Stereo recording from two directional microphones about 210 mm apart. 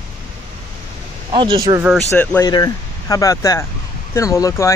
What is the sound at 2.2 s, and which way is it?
Speech, 10° left (ahead or behind).